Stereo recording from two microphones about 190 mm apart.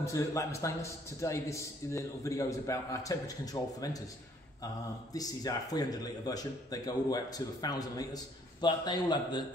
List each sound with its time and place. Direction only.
0.0 s a man's voice: 15° left (ahead or behind)
5.1 s speech: 20° left (ahead or behind)